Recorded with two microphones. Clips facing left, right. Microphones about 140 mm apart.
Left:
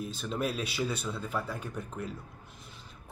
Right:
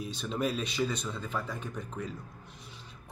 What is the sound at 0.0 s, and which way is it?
Speech, centre (ahead or behind).